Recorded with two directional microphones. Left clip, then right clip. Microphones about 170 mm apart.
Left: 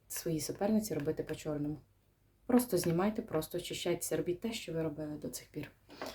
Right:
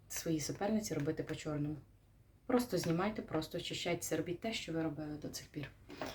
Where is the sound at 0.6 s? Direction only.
55° left (ahead or behind).